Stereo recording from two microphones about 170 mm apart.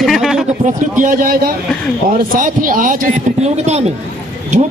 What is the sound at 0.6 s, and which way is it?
A man's voice, 50° right (ahead or behind).